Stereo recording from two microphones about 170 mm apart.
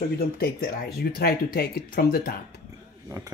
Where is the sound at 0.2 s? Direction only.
65° left (ahead or behind).